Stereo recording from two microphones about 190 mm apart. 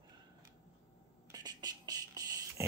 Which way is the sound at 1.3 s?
20° right (ahead or behind).